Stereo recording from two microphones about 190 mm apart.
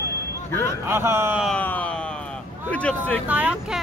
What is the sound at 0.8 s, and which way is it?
Speech, 15° right (ahead or behind).